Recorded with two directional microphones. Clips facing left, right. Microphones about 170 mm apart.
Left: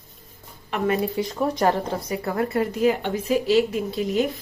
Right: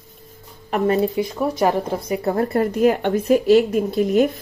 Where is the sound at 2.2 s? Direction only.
30° right (ahead or behind); by 4.3 s 50° right (ahead or behind).